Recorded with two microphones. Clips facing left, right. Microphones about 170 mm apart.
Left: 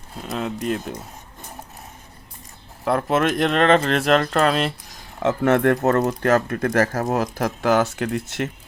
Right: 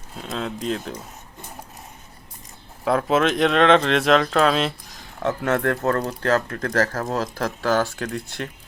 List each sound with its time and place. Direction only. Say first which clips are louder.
0.2 s speech: left 2 dB; 5° left (ahead or behind)
2.8 s speech: even; 5° left (ahead or behind)
5.2 s speech: left 4 dB; 20° left (ahead or behind)